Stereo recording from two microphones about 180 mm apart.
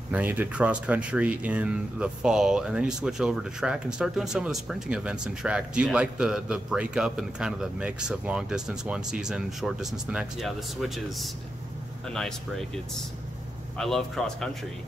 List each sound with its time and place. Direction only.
0.1 s speech: 10° right (ahead or behind)
13.7 s speech: 5° left (ahead or behind)